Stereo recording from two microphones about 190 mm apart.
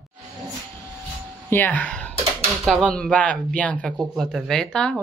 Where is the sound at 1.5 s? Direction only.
10° left (ahead or behind).